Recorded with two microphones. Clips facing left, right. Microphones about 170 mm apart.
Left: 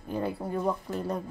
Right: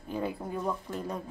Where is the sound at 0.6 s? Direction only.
10° left (ahead or behind).